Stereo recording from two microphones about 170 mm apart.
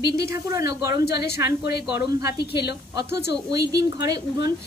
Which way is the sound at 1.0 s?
70° left (ahead or behind).